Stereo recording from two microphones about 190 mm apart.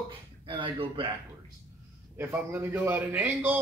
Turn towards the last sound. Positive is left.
turn(degrees=-10)  # may be behind; listen again after turning